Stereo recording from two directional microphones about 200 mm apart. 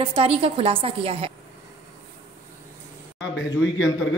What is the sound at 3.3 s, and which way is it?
Speech, 70° left (ahead or behind).